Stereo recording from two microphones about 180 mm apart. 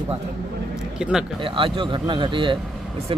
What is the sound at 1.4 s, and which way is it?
Speech, 30° right (ahead or behind).